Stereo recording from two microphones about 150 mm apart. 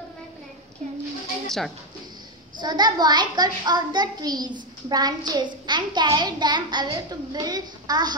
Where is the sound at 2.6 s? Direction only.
30° right (ahead or behind).